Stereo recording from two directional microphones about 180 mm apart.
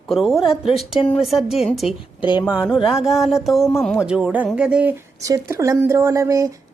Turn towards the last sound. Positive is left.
turn(degrees=-20)  # may be behind; listen again after turning